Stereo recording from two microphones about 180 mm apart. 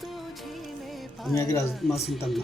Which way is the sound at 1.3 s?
15° left (ahead or behind).